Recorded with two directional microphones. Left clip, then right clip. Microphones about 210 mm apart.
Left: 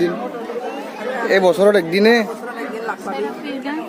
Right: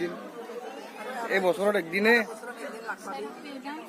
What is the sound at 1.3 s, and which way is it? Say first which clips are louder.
Speech: left 12 dB; 25° left (ahead or behind).